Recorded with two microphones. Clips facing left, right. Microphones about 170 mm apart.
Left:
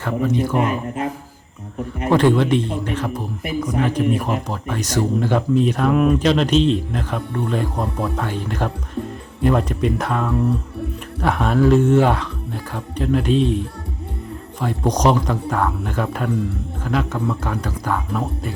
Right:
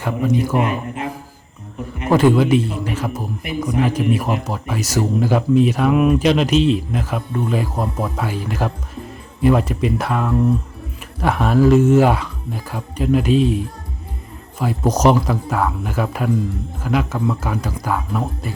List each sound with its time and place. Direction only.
0.0 s speech: 10° right (ahead or behind)
0.7 s speech: 40° left (ahead or behind)
2.0 s speech: 10° right (ahead or behind)